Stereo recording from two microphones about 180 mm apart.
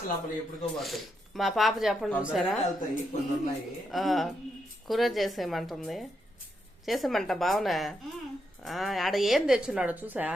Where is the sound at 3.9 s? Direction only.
Centre (ahead or behind).